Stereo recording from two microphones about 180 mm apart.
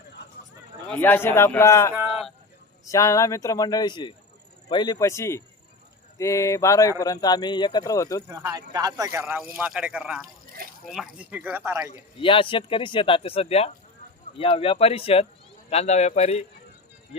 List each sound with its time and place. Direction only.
0.9 s a man's voice: 10° left (ahead or behind)
1.9 s a sound: 5° right (ahead or behind)
2.8 s a man's voice: 20° left (ahead or behind)
8.3 s speech: 10° right (ahead or behind)
12.2 s speech: 30° left (ahead or behind)